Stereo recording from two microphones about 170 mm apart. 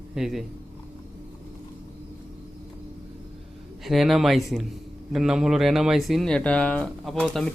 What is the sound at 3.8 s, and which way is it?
Speech, centre (ahead or behind).